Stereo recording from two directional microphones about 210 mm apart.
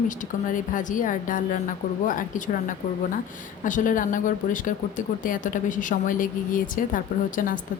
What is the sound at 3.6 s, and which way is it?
Speech, 40° left (ahead or behind).